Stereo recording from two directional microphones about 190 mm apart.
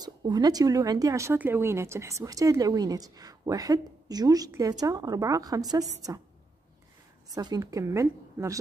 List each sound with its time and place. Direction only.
0.0 s a woman's voice: 20° right (ahead or behind)
7.3 s a woman's voice: 20° right (ahead or behind)